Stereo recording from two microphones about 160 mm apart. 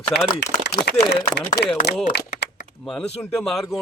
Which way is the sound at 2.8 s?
5° left (ahead or behind).